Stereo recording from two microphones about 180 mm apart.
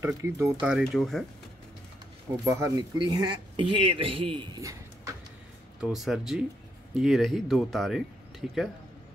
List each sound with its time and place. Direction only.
0.0 s speech: 15° right (ahead or behind)
0.7 s speech: 5° right (ahead or behind)
2.4 s speech: 15° right (ahead or behind)
5.8 s speech: 5° right (ahead or behind)